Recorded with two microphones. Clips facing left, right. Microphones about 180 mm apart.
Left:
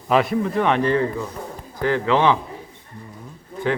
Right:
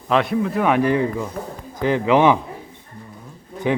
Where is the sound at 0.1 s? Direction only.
Centre (ahead or behind); by 2.4 s 15° right (ahead or behind).